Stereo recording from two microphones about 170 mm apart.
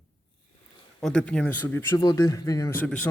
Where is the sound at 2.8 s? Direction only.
5° left (ahead or behind).